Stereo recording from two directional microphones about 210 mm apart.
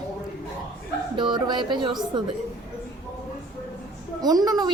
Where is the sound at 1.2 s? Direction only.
20° right (ahead or behind).